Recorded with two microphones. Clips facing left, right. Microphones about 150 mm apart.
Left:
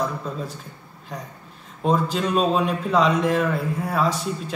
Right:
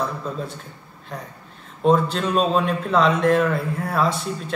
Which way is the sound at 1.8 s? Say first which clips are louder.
Right 3 dB; 5° left (ahead or behind).